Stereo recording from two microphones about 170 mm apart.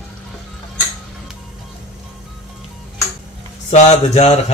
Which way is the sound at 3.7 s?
40° left (ahead or behind).